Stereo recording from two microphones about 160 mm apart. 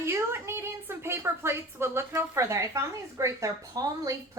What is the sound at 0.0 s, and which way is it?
A woman's voice, 15° right (ahead or behind).